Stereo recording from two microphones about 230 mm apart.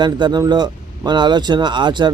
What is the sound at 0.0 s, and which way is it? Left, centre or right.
Speech, centre.